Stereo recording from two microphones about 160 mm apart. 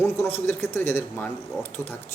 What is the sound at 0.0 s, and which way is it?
A man's voice, 15° left (ahead or behind).